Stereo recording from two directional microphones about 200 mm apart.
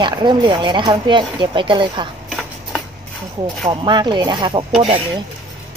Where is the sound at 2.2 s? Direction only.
Centre (ahead or behind).